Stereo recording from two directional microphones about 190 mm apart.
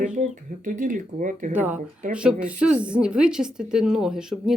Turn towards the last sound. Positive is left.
turn(degrees=-5)  # may be behind; listen again after turning